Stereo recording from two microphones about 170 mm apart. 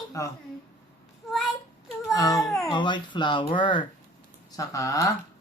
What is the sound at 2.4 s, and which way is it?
Speech, centre (ahead or behind).